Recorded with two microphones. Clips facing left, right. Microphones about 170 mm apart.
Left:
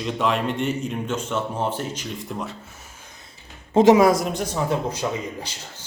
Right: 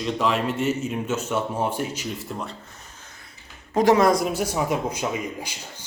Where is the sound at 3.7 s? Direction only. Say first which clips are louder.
Left 4 dB; 25° left (ahead or behind).